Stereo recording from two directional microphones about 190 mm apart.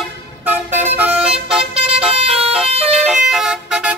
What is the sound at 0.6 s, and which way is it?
Vehicle, 35° right (ahead or behind).